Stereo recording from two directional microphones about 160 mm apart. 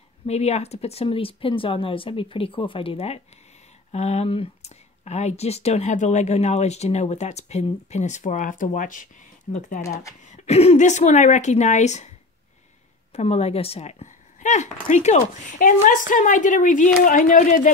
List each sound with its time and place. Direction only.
0.3 s speech: 40° left (ahead or behind)
13.1 s speech: 40° left (ahead or behind)